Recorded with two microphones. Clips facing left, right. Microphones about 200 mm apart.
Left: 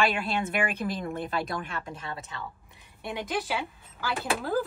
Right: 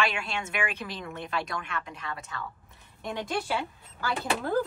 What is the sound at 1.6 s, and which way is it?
Speech, 30° left (ahead or behind).